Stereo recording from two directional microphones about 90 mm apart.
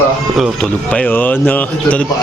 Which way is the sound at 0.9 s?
15° left (ahead or behind).